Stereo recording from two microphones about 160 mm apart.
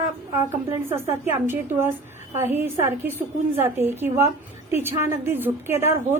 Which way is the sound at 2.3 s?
15° right (ahead or behind).